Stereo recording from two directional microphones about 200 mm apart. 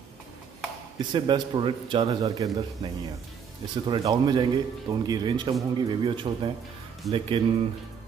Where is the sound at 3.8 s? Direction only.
20° right (ahead or behind).